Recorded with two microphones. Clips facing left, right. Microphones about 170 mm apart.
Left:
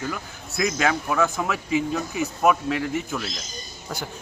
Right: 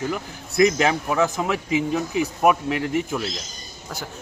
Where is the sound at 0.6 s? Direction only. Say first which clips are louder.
Right 5 dB; 20° right (ahead or behind).